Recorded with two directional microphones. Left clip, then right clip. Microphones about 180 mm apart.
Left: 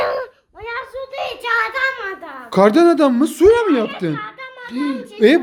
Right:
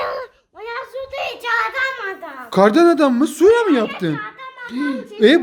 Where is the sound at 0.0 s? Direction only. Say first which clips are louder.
Left 4 dB; 35° left (ahead or behind).